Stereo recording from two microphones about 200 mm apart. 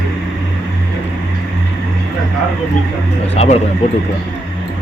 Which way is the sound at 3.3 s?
30° left (ahead or behind).